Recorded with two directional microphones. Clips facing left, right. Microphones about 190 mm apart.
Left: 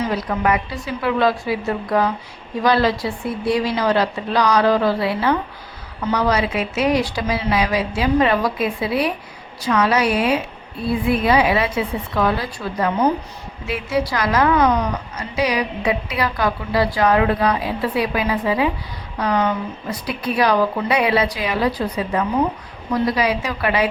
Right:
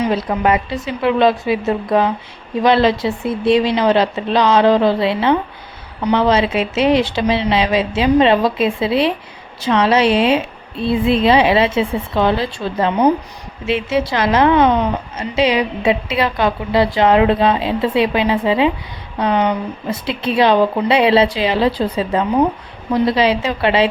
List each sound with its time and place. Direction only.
0.0 s a woman's voice: 25° right (ahead or behind)